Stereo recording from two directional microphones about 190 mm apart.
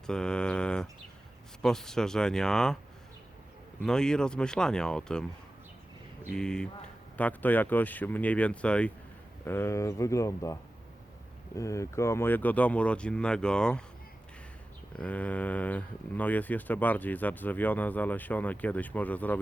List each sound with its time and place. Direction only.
0.1 s mantra: 5° left (ahead or behind)
1.6 s speech: 5° left (ahead or behind)
3.8 s speech: 5° left (ahead or behind)
6.3 s speech: 5° left (ahead or behind)
14.9 s speech: 5° left (ahead or behind)